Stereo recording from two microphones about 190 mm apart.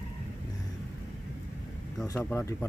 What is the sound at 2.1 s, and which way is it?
Speech, 15° left (ahead or behind).